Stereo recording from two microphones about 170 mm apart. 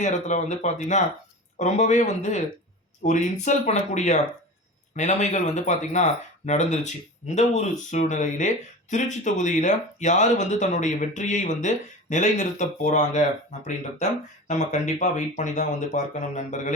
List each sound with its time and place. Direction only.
0.0 s speech: 45° left (ahead or behind)